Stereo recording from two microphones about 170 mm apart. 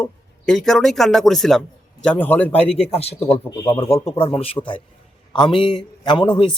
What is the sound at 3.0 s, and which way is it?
Speech, 35° left (ahead or behind).